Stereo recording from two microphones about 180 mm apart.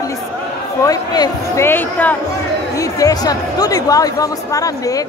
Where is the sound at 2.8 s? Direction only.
20° left (ahead or behind).